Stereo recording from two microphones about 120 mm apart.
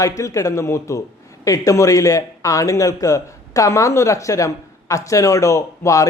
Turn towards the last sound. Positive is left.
turn(degrees=25)  # may be behind; listen again after turning